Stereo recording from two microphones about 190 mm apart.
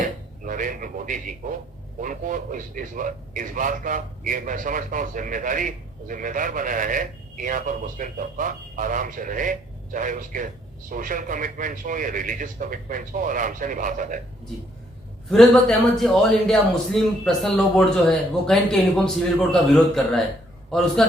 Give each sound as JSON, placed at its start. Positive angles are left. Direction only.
{"t": 0.0, "sound": "a man's voice", "side_deg": -45}
{"t": 15.3, "sound": "a man's voice", "side_deg": 0}